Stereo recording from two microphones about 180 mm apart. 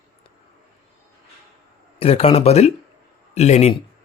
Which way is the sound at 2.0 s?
35° left (ahead or behind).